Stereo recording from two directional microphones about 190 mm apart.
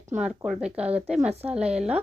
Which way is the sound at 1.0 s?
35° right (ahead or behind).